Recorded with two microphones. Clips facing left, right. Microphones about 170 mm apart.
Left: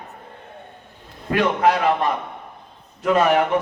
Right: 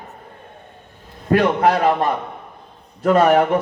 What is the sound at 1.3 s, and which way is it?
Speech, 40° right (ahead or behind).